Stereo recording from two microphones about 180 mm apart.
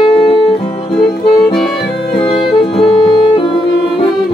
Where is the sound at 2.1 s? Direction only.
30° left (ahead or behind).